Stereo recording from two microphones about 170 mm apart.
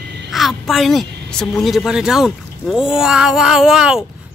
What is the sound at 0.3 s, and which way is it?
A woman's voice, centre (ahead or behind).